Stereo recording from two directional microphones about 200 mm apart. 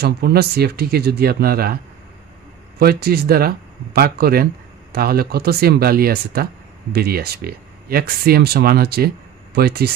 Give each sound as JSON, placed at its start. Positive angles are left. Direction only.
{"t": 0.0, "sound": "speech", "side_deg": -50}
{"t": 2.8, "sound": "speech", "side_deg": -50}